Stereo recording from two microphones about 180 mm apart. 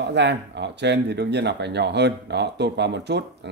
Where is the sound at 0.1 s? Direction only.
75° right (ahead or behind).